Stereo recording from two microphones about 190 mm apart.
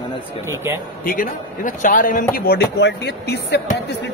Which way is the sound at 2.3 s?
55° left (ahead or behind).